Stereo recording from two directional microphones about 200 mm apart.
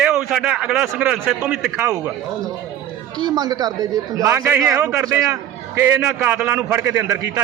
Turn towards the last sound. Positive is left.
turn(degrees=-15)  # may be behind; listen again after turning